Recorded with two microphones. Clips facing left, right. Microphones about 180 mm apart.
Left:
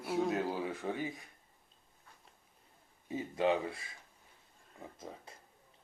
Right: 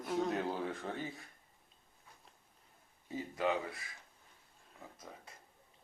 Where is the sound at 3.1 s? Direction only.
25° left (ahead or behind).